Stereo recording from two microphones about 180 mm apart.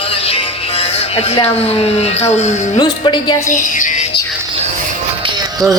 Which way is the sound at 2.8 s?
25° left (ahead or behind).